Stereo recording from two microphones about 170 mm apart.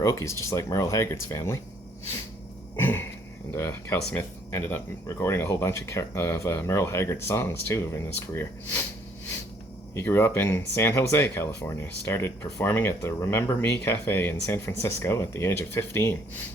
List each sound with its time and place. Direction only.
0.0 s speech: 20° left (ahead or behind)
2.7 s a sound: 10° left (ahead or behind)
3.5 s speech: 15° left (ahead or behind)
9.9 s speech: 15° left (ahead or behind)